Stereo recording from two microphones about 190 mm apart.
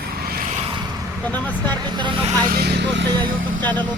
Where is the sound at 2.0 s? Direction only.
25° right (ahead or behind).